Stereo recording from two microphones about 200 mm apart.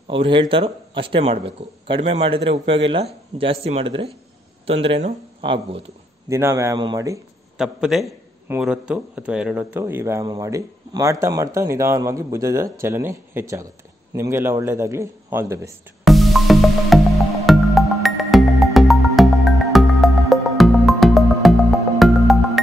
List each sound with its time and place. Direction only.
0.1 s speech: 25° right (ahead or behind)
6.2 s speech: 15° right (ahead or behind)
7.5 s a man's voice: 5° right (ahead or behind)
16.0 s music: centre (ahead or behind)